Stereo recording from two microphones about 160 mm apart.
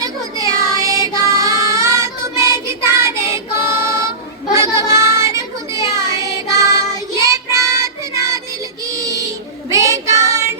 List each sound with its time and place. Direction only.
0.8 s music: 20° right (ahead or behind)
2.9 s child singing: 15° right (ahead or behind)
9.6 s child singing: 20° right (ahead or behind)